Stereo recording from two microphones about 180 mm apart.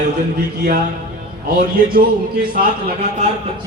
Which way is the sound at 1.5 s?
55° right (ahead or behind).